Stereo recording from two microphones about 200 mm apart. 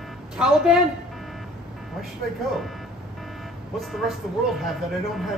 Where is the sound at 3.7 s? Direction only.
Centre (ahead or behind).